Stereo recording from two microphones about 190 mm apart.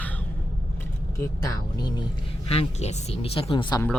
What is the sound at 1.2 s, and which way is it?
Speech, 15° left (ahead or behind).